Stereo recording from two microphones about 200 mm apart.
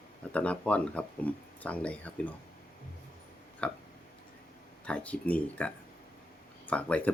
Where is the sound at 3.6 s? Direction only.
5° left (ahead or behind).